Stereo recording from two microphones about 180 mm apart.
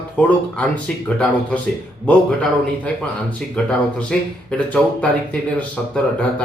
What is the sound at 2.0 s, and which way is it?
Speech, 5° left (ahead or behind).